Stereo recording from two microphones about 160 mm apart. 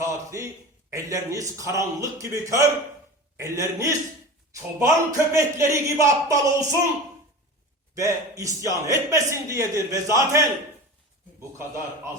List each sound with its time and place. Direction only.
0.0 s a man's voice: 20° right (ahead or behind)
7.9 s a man's voice: 20° right (ahead or behind)